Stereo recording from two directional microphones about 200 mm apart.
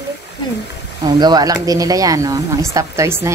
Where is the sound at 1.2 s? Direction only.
20° right (ahead or behind).